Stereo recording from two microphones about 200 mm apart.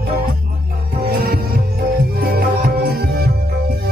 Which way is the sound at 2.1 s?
50° right (ahead or behind).